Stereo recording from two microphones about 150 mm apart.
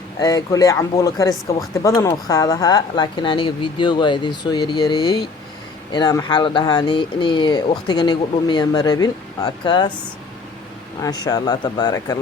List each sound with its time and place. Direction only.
0.2 s speech: 20° left (ahead or behind)
11.0 s speech: 25° left (ahead or behind)